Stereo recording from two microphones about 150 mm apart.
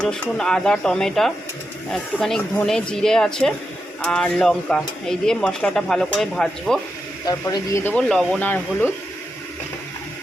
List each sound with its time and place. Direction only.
0.0 s speech: 5° left (ahead or behind)
7.3 s speech: 25° left (ahead or behind)
7.9 s speech: 5° left (ahead or behind)